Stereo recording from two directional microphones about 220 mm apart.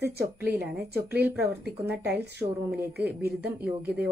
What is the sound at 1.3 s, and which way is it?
Speech, 10° right (ahead or behind).